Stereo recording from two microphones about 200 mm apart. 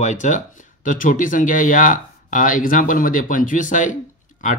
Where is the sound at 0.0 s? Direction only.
35° left (ahead or behind).